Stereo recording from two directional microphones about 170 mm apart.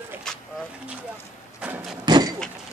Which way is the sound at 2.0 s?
25° right (ahead or behind).